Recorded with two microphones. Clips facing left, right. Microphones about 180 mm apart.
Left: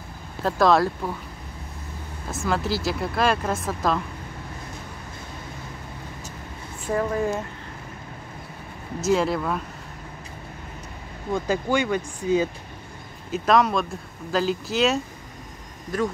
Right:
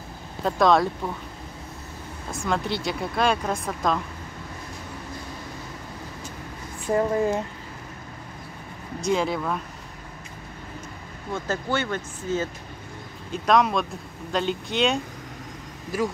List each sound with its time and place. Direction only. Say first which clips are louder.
0.4 s speech: left 1 dB; centre (ahead or behind)
2.3 s speech: left 1 dB; 5° left (ahead or behind)
7.0 s speech: right 2 dB; 25° right (ahead or behind)
9.0 s speech: left 2 dB; centre (ahead or behind)
11.3 s speech: left 4 dB; 15° left (ahead or behind)
13.3 s speech: left 1 dB; centre (ahead or behind)